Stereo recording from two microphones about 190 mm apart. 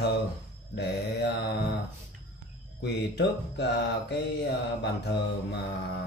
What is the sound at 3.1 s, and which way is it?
Speech, 60° left (ahead or behind).